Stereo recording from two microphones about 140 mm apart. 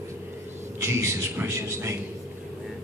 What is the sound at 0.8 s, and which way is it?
Speech, 20° right (ahead or behind).